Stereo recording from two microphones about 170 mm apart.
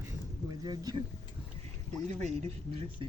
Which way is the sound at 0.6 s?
25° right (ahead or behind).